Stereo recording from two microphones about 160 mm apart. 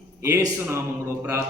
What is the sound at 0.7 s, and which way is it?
Speech, 15° right (ahead or behind).